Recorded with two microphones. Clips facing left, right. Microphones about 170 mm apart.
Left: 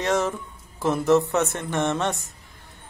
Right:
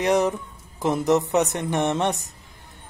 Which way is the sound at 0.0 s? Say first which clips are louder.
Right 3 dB; 15° right (ahead or behind).